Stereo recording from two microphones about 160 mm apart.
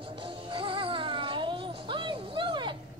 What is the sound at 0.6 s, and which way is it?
Music, 30° right (ahead or behind).